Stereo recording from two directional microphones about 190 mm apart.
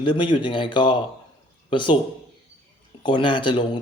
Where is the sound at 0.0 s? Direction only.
25° left (ahead or behind).